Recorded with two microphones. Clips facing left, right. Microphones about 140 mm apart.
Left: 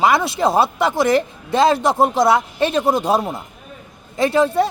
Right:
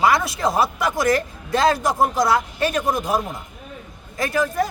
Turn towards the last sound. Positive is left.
turn(degrees=30)  # may be behind; listen again after turning